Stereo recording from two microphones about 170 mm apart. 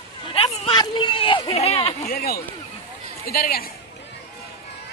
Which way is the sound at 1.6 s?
35° left (ahead or behind).